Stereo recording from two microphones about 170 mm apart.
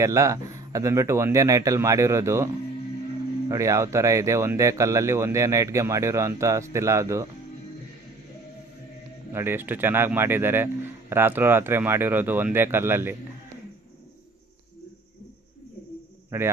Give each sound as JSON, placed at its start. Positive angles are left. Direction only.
{"t": 0.0, "sound": "speech", "side_deg": -20}
{"t": 3.5, "sound": "speech", "side_deg": -20}
{"t": 9.3, "sound": "speech", "side_deg": -15}
{"t": 16.3, "sound": "speech", "side_deg": -15}